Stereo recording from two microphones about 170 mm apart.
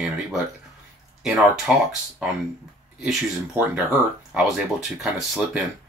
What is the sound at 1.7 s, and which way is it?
Speech, 5° right (ahead or behind).